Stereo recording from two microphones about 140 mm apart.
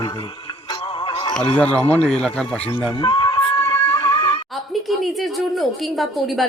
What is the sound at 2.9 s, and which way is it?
Music, 35° left (ahead or behind).